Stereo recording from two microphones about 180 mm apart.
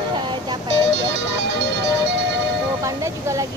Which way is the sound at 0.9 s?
70° right (ahead or behind).